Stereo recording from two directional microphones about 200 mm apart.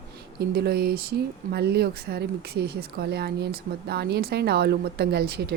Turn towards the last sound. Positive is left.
turn(degrees=-55)  # may be behind; listen again after turning